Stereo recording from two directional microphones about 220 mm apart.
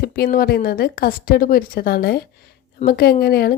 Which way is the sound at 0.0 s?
40° left (ahead or behind).